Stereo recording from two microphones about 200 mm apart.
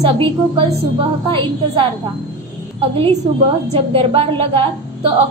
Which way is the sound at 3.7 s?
30° right (ahead or behind).